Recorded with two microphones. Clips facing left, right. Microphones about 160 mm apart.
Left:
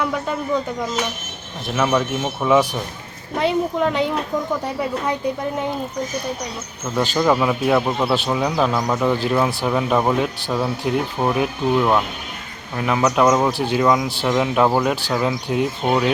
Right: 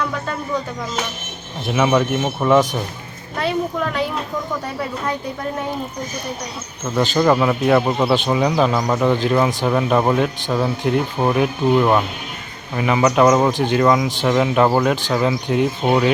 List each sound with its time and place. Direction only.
0.0 s a sound: 15° left (ahead or behind)
1.6 s speech: 5° right (ahead or behind)
3.3 s speech: 20° left (ahead or behind)
6.9 s speech: 10° left (ahead or behind)